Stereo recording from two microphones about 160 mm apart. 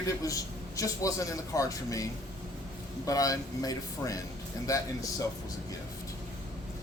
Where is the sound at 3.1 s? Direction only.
20° left (ahead or behind).